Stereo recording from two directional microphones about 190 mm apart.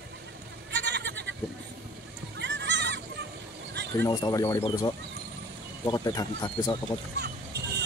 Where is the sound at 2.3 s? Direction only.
70° right (ahead or behind).